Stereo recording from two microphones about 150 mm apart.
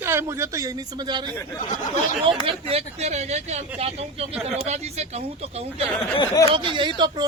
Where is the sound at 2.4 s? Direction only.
40° right (ahead or behind).